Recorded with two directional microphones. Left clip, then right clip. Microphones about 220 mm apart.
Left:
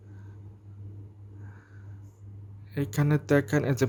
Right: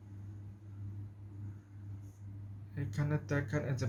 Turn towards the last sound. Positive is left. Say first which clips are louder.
# left 12 dB
turn(degrees=50)  # may be behind; listen again after turning